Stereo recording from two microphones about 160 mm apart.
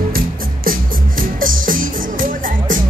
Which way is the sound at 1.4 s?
60° right (ahead or behind).